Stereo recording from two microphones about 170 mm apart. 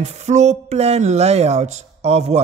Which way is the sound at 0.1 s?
40° right (ahead or behind).